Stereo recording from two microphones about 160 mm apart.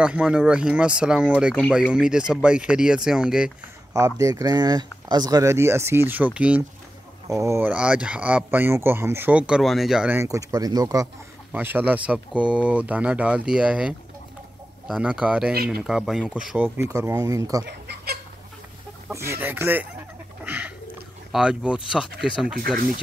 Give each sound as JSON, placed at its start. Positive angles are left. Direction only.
{"t": 0.0, "sound": "speech", "side_deg": -5}
{"t": 3.9, "sound": "speech", "side_deg": -20}
{"t": 10.2, "sound": "speech", "side_deg": -20}
{"t": 11.5, "sound": "speech", "side_deg": -10}
{"t": 17.6, "sound": "chicken", "side_deg": -85}
{"t": 19.0, "sound": "speech", "side_deg": -15}
{"t": 20.4, "sound": "a sound", "side_deg": -10}
{"t": 21.3, "sound": "speech", "side_deg": -5}